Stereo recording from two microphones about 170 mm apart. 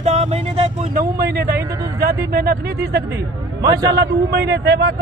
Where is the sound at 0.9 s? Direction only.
70° right (ahead or behind).